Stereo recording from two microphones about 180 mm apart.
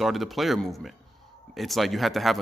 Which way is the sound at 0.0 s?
Centre (ahead or behind).